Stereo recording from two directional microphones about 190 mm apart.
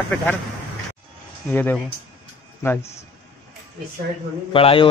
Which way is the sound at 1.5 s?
10° left (ahead or behind).